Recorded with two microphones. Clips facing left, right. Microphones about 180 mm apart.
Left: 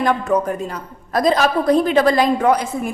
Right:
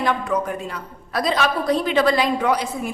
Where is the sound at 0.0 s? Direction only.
45° left (ahead or behind).